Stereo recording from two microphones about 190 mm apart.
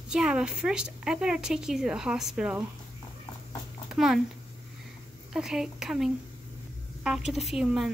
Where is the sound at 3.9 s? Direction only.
Centre (ahead or behind).